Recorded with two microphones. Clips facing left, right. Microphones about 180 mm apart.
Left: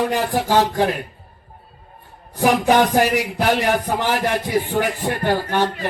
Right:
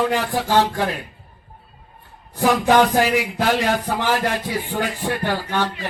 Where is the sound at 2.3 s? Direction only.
15° left (ahead or behind).